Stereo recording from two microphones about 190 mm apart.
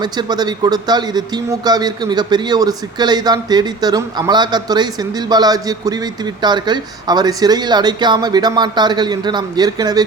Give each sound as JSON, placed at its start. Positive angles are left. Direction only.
{"t": 0.0, "sound": "speech", "side_deg": -20}